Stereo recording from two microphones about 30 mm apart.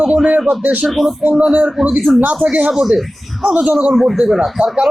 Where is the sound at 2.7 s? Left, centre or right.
Centre.